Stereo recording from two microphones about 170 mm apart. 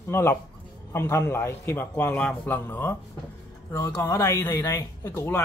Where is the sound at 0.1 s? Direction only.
15° left (ahead or behind).